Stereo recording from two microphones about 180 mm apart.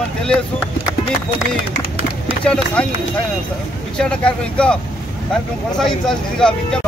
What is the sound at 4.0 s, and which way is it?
Speech, 5° left (ahead or behind).